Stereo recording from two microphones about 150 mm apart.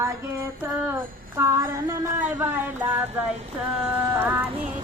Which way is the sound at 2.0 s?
15° right (ahead or behind).